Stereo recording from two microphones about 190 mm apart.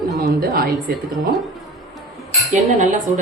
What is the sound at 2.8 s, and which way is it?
Speech, 40° right (ahead or behind).